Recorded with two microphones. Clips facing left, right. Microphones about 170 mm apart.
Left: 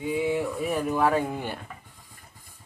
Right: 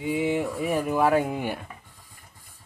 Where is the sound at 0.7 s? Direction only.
10° right (ahead or behind).